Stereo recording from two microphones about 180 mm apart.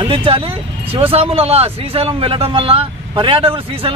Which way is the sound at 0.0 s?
30° right (ahead or behind).